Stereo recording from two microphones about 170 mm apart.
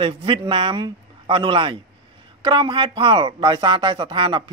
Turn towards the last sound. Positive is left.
turn(degrees=-30)  # may be behind; listen again after turning